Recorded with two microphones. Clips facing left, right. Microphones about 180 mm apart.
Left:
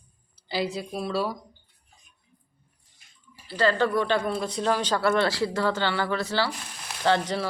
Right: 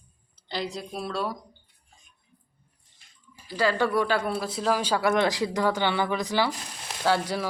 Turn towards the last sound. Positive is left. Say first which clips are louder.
# left 1 dB
turn(degrees=-10)  # may be behind; listen again after turning